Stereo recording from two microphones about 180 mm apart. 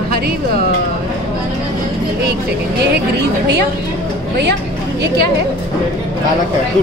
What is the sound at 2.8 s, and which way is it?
Speech, 70° right (ahead or behind).